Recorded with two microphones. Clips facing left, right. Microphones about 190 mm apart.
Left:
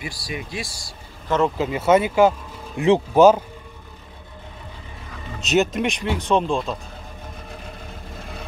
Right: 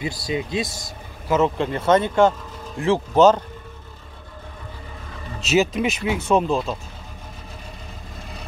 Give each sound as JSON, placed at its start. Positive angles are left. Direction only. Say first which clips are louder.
{"t": 0.0, "sound": "speech", "louder": "right 6 dB", "side_deg": -20}
{"t": 1.3, "sound": "speech", "louder": "right 1 dB", "side_deg": -5}
{"t": 1.7, "sound": "speech", "louder": "left 1 dB", "side_deg": 10}
{"t": 5.4, "sound": "speech", "louder": "even", "side_deg": 0}